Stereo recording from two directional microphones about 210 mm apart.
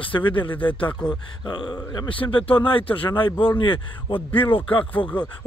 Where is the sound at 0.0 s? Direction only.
25° left (ahead or behind).